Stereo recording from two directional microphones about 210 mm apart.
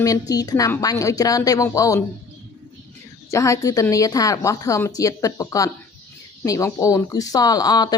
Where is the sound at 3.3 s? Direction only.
15° left (ahead or behind).